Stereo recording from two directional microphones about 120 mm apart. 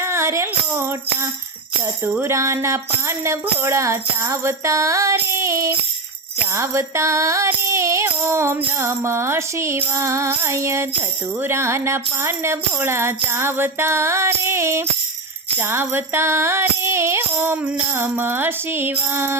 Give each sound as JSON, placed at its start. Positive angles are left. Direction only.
{"t": 0.0, "sound": "tambourine", "side_deg": -20}
{"t": 2.1, "sound": "music", "side_deg": -20}